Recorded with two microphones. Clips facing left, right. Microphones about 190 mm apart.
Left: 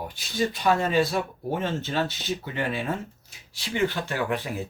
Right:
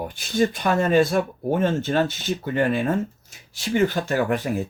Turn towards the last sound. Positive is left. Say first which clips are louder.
# right 5 dB
turn(degrees=-45)  # may be behind; listen again after turning